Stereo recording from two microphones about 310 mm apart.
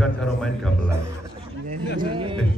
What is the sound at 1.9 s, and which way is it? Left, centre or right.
Speech, centre.